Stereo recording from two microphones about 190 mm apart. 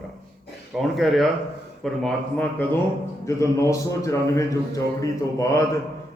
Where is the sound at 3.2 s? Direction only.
15° left (ahead or behind).